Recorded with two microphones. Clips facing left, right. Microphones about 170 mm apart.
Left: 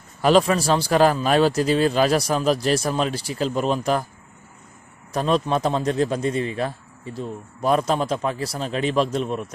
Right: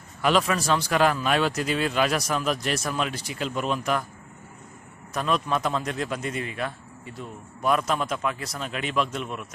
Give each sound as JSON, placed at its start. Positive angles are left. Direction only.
{"t": 0.2, "sound": "a man's voice", "side_deg": 35}
{"t": 5.1, "sound": "a man's voice", "side_deg": 30}